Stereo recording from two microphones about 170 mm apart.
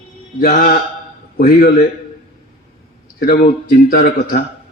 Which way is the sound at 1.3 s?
60° left (ahead or behind).